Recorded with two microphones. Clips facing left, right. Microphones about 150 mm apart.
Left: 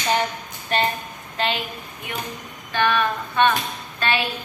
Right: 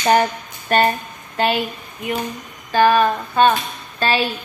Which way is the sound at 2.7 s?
35° right (ahead or behind).